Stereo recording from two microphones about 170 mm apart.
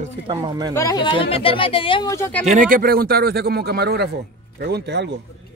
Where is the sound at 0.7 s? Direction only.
20° left (ahead or behind).